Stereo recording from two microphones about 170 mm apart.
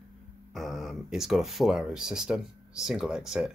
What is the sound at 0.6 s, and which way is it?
Speech, centre (ahead or behind).